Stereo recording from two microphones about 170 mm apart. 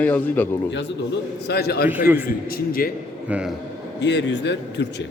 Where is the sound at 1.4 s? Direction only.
70° left (ahead or behind).